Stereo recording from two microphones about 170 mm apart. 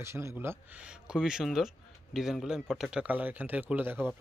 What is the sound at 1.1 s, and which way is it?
Speech, 5° right (ahead or behind).